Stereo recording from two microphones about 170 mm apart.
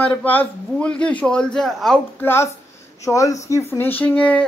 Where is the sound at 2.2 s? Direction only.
15° left (ahead or behind).